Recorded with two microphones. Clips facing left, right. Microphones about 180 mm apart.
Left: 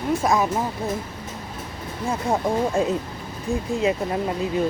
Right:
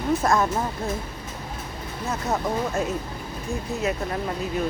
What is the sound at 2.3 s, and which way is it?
Speech, 30° left (ahead or behind).